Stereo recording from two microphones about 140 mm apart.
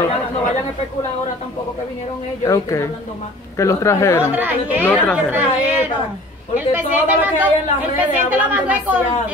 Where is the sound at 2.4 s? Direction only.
20° left (ahead or behind).